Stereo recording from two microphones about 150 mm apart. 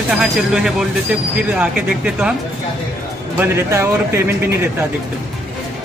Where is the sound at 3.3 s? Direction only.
15° right (ahead or behind).